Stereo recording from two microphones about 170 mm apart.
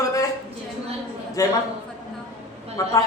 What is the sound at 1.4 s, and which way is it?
Speech, 20° left (ahead or behind).